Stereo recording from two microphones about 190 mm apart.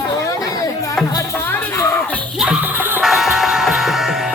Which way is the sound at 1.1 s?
15° left (ahead or behind).